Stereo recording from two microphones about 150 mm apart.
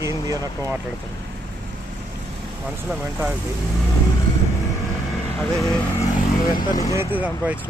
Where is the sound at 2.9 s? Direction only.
10° right (ahead or behind).